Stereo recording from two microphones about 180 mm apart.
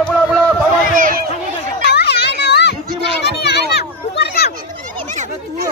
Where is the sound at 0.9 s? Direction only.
50° right (ahead or behind).